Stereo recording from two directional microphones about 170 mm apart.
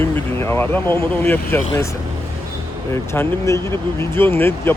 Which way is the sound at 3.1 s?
15° left (ahead or behind).